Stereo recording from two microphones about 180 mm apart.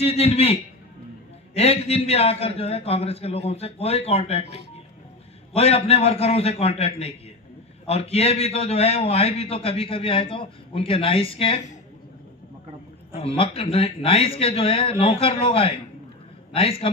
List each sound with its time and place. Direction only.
0.0 s a man's voice: 35° left (ahead or behind)
5.5 s a man's voice: 35° left (ahead or behind)
13.1 s a man's voice: 30° left (ahead or behind)